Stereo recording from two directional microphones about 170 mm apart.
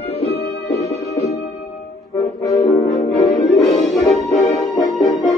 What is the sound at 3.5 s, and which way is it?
Music, centre (ahead or behind).